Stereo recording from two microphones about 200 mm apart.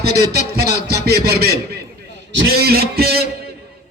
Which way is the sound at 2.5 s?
50° right (ahead or behind).